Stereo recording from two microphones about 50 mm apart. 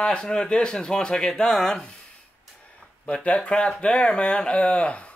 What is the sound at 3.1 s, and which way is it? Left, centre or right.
Speech, left.